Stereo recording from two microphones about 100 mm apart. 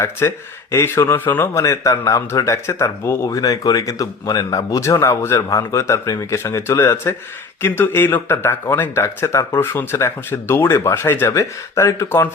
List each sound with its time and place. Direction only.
0.0 s speech: 25° left (ahead or behind)
1.5 s speech: 30° left (ahead or behind)
3.2 s speech: 35° left (ahead or behind)